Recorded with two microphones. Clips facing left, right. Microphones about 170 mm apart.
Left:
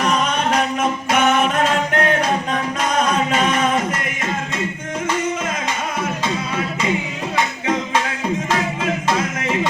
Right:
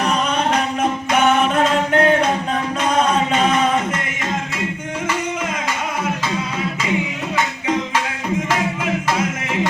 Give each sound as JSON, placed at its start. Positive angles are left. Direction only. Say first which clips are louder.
{"t": 0.8, "sound": "singing", "louder": "right 1 dB", "side_deg": -35}
{"t": 2.9, "sound": "a capella", "louder": "right 1 dB", "side_deg": -30}